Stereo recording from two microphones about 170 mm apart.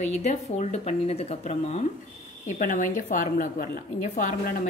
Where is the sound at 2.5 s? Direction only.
50° left (ahead or behind).